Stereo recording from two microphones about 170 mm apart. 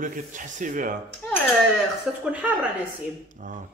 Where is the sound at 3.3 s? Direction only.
50° right (ahead or behind).